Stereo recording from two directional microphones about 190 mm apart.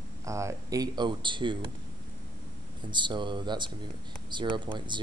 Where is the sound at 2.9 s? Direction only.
25° right (ahead or behind).